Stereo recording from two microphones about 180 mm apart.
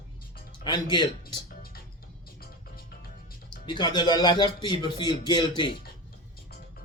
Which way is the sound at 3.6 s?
25° left (ahead or behind).